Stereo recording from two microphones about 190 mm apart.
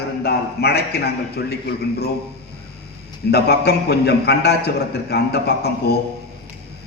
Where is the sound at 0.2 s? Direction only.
55° left (ahead or behind).